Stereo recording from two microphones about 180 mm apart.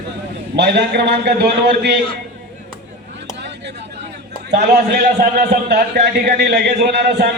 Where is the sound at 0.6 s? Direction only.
70° right (ahead or behind).